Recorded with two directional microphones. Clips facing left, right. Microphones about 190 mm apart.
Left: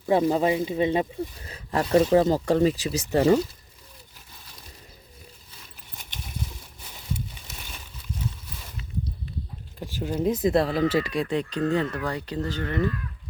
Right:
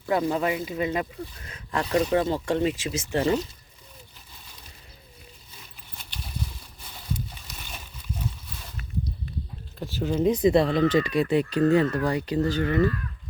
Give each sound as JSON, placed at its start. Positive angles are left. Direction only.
{"t": 0.0, "sound": "speech", "side_deg": 30}
{"t": 9.8, "sound": "a sound", "side_deg": 10}
{"t": 10.2, "sound": "speech", "side_deg": 0}